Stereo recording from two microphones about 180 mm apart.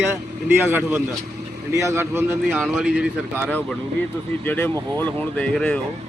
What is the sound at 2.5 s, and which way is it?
Speech, centre (ahead or behind).